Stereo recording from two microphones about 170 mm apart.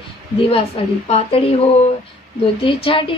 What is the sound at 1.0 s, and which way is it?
A woman's voice, 35° left (ahead or behind).